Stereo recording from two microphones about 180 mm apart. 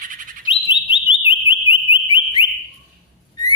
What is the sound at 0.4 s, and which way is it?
Bird, 30° left (ahead or behind).